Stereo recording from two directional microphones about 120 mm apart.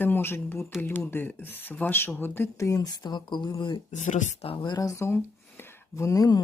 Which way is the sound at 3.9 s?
90° left.